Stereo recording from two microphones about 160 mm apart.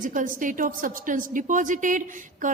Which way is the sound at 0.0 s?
55° right (ahead or behind).